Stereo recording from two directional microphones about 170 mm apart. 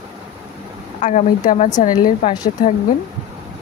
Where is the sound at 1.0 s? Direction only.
45° left (ahead or behind).